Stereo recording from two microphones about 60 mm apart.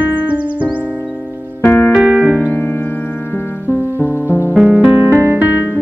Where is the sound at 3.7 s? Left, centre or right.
Right.